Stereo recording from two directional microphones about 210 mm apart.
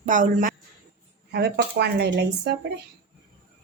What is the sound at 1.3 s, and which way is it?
A woman's voice, 50° right (ahead or behind).